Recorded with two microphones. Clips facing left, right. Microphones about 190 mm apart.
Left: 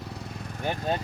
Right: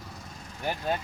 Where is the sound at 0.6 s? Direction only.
20° left (ahead or behind).